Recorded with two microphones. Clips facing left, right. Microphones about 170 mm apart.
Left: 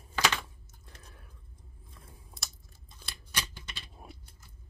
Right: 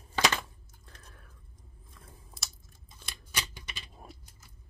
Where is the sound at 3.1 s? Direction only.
15° right (ahead or behind).